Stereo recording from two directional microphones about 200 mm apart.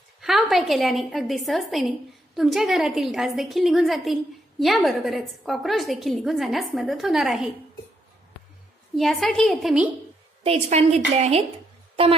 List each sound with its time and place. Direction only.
0.2 s a woman's voice: centre (ahead or behind)
8.9 s a woman's voice: centre (ahead or behind)
10.4 s a woman's voice: 30° right (ahead or behind)